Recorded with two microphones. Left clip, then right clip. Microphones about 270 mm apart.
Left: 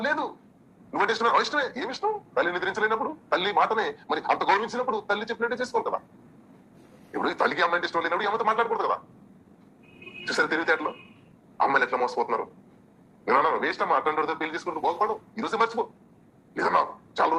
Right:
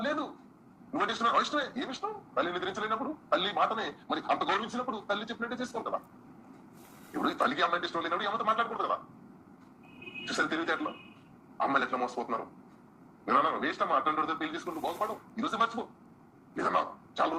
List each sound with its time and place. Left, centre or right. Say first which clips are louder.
0.0 s a sound: left 6 dB; centre
0.9 s a man's voice: left 5 dB; centre
7.1 s a man's voice: left 4 dB; centre
10.2 s a man's voice: left 7 dB; centre